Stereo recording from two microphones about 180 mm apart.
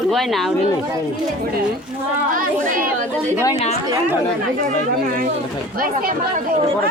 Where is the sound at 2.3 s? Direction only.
50° right (ahead or behind).